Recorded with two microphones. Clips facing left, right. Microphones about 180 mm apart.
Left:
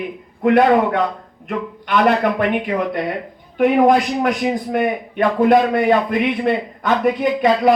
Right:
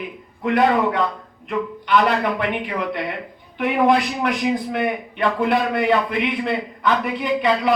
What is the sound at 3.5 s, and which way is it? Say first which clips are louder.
A man's voice: left 4 dB; 45° left (ahead or behind).